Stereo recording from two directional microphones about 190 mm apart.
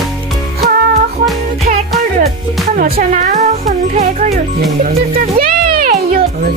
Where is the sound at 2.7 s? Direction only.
45° right (ahead or behind).